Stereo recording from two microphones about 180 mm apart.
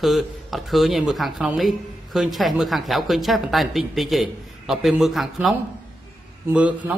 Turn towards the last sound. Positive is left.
turn(degrees=-10)  # may be behind; listen again after turning